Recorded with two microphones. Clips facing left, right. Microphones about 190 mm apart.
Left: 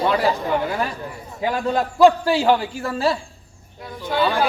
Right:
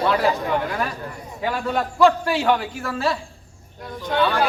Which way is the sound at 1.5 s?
35° left (ahead or behind).